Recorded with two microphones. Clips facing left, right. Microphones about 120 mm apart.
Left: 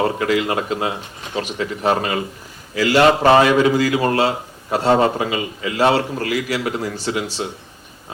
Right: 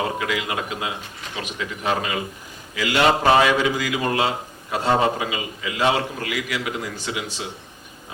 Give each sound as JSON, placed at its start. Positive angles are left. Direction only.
{"t": 0.0, "sound": "a man's voice", "side_deg": 40}